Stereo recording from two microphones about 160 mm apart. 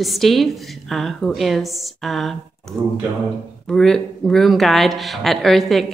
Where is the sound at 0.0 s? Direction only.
Centre (ahead or behind).